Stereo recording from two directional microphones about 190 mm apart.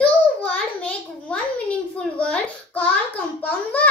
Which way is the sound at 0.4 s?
5° left (ahead or behind).